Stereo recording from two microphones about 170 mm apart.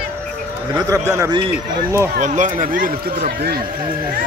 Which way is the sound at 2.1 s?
45° right (ahead or behind).